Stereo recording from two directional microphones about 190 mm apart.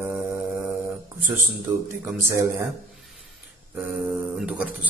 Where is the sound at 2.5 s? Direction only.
Centre (ahead or behind).